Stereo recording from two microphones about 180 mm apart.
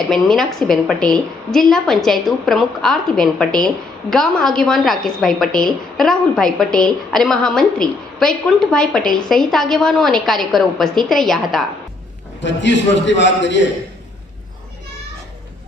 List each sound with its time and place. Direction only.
0.1 s a woman's voice: centre (ahead or behind)
12.4 s a man's voice: 80° left